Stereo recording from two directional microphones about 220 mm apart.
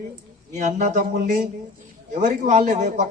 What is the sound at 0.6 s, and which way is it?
Speech, 30° right (ahead or behind).